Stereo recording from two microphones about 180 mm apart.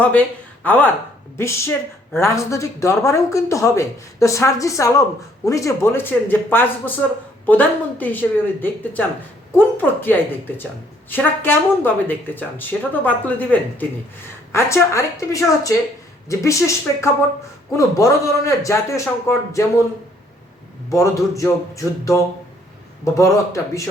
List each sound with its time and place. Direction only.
0.6 s speech: 10° left (ahead or behind)
20.9 s speech: 15° left (ahead or behind)